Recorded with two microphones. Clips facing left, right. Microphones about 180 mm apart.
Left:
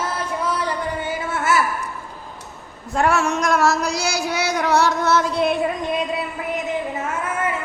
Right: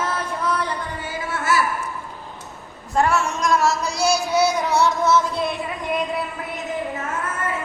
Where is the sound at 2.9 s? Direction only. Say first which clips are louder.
Left 1 dB; 65° left (ahead or behind).